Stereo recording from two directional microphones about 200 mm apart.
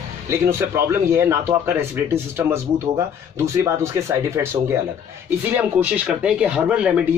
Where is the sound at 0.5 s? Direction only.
15° right (ahead or behind).